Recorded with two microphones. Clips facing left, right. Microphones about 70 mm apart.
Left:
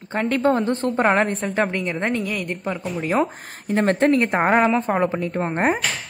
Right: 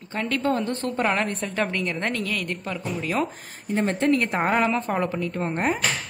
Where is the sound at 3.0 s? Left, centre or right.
Left.